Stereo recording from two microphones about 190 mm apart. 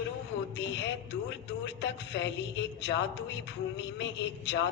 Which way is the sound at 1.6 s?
70° left (ahead or behind).